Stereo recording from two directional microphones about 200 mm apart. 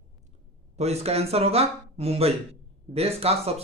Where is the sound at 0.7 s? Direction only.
30° right (ahead or behind).